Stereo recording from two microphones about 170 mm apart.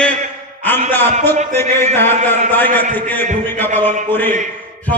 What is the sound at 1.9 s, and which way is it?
A man's voice, 10° left (ahead or behind).